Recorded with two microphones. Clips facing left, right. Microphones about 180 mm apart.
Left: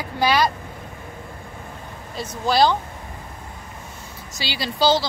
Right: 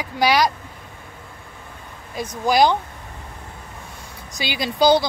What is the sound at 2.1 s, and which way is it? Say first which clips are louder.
Speech: right 2 dB; 15° right (ahead or behind).